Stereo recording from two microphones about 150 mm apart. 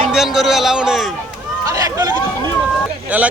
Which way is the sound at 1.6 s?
20° right (ahead or behind).